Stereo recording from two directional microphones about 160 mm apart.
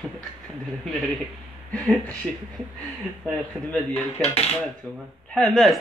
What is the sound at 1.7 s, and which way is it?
Speech, 10° left (ahead or behind).